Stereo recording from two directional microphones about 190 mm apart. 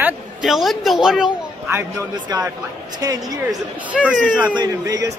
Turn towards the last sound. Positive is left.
turn(degrees=-20)  # may be behind; listen again after turning